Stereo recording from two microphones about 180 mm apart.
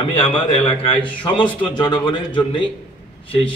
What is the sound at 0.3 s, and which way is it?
A man's voice, 30° left (ahead or behind).